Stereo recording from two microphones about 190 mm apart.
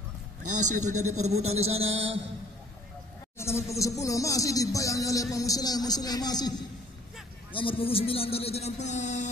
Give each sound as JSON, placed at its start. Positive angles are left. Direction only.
{"t": 0.4, "sound": "a man's voice", "side_deg": -40}
{"t": 1.5, "sound": "music", "side_deg": -90}
{"t": 3.3, "sound": "speech", "side_deg": 15}
{"t": 7.5, "sound": "speech", "side_deg": 30}